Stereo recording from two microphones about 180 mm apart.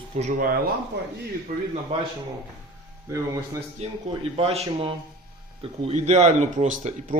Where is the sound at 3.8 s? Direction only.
35° right (ahead or behind).